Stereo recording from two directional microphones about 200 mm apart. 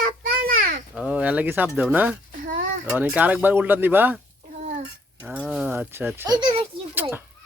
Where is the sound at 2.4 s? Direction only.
40° right (ahead or behind).